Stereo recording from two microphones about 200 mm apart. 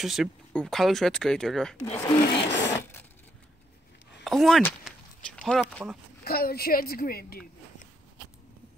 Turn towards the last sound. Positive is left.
turn(degrees=45)  # may be behind; listen again after turning